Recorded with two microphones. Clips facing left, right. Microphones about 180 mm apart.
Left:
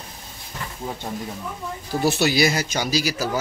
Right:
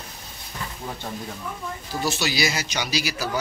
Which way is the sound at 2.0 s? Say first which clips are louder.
Left 6 dB; 60° left (ahead or behind).